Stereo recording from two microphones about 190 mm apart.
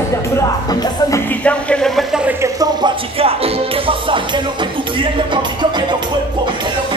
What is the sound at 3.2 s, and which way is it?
Music, 30° right (ahead or behind).